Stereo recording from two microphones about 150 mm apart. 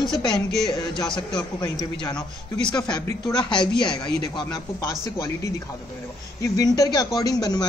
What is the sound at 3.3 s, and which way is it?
A man's voice, 30° left (ahead or behind).